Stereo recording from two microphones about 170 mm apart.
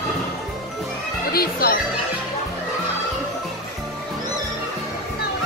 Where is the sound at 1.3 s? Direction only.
60° left (ahead or behind).